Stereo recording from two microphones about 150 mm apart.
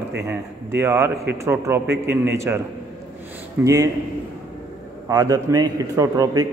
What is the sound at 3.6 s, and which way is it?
Speech, 20° right (ahead or behind).